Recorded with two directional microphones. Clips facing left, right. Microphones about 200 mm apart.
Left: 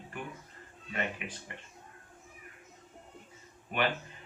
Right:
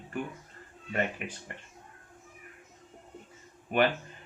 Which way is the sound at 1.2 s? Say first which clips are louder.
Right 3 dB; 45° right (ahead or behind).